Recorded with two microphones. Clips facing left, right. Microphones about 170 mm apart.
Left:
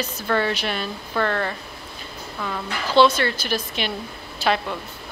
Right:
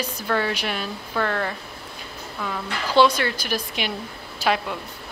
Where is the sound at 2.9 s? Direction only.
10° right (ahead or behind).